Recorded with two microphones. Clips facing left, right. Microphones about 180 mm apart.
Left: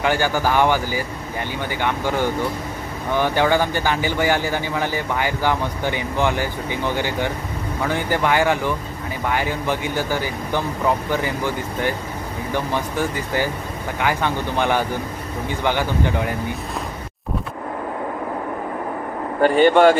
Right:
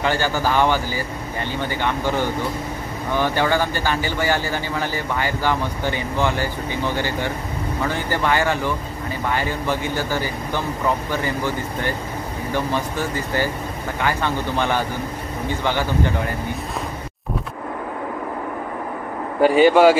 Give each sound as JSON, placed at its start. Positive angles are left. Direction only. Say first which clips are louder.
{"t": 0.0, "sound": "speech", "louder": "left 1 dB", "side_deg": 15}
{"t": 19.4, "sound": "speech", "louder": "right 1 dB", "side_deg": -5}